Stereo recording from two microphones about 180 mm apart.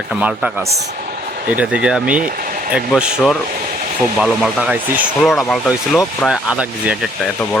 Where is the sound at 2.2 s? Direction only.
50° right (ahead or behind).